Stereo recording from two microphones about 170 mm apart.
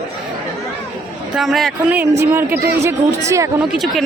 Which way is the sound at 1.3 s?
Centre (ahead or behind).